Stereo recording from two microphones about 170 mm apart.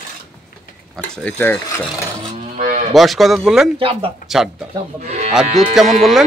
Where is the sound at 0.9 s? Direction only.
10° left (ahead or behind).